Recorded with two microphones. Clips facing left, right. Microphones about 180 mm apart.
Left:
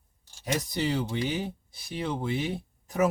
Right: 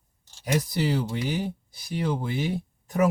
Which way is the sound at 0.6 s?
Centre (ahead or behind).